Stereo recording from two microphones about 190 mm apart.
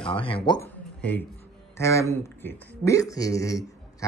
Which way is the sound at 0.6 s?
10° left (ahead or behind).